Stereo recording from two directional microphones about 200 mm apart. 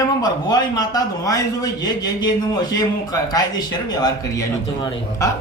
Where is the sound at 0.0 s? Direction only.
20° left (ahead or behind).